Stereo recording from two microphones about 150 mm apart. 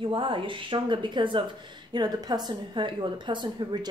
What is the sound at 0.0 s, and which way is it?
Speech, 35° right (ahead or behind).